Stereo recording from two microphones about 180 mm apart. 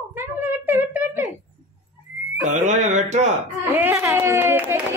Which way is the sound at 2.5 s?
40° right (ahead or behind).